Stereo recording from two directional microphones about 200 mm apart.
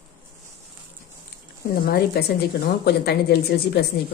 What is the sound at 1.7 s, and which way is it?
Speech, 50° left (ahead or behind).